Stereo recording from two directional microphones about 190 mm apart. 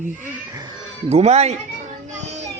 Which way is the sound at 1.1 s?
35° right (ahead or behind).